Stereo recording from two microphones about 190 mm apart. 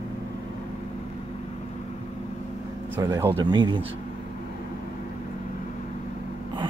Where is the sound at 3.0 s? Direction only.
15° right (ahead or behind).